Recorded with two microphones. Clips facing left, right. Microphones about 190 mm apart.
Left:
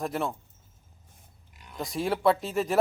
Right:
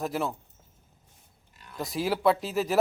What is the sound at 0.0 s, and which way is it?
Speech, centre (ahead or behind).